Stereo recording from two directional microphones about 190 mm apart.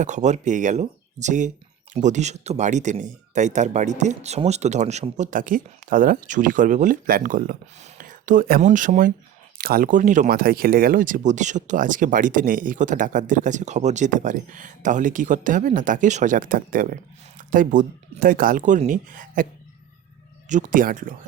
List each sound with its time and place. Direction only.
0.0 s speech: 40° right (ahead or behind)
20.5 s speech: 45° right (ahead or behind)